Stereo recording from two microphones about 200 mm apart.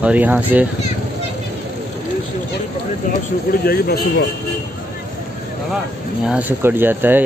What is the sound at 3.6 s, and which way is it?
Speech, 50° left (ahead or behind).